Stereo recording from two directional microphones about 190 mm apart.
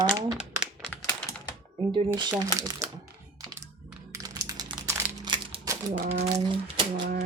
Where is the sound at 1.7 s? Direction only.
20° right (ahead or behind).